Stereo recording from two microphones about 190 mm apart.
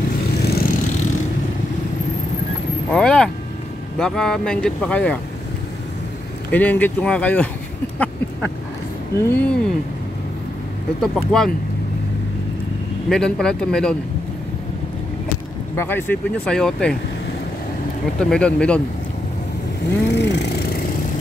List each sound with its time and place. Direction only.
0.4 s vehicle: 55° left (ahead or behind)
2.9 s speech: 5° left (ahead or behind)
6.5 s speech: 10° left (ahead or behind)
9.1 s speech: 10° left (ahead or behind)
11.0 s speech: centre (ahead or behind)
13.1 s speech: 5° left (ahead or behind)
15.7 s speech: 10° left (ahead or behind)
18.3 s speech: 5° left (ahead or behind)
20.1 s a sound: 65° left (ahead or behind)